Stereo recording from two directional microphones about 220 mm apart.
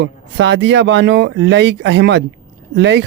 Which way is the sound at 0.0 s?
55° right (ahead or behind).